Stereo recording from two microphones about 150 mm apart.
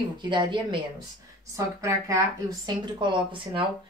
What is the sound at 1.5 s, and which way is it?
A woman's voice, 20° right (ahead or behind).